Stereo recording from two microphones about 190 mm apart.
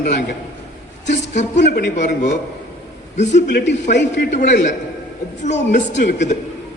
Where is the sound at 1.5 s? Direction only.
65° left (ahead or behind).